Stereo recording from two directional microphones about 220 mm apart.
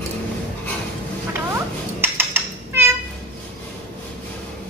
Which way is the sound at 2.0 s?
10° right (ahead or behind).